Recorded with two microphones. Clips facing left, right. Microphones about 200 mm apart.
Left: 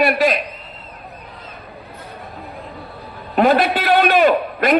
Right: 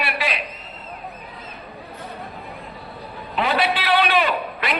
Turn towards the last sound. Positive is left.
turn(degrees=45)  # may be behind; listen again after turning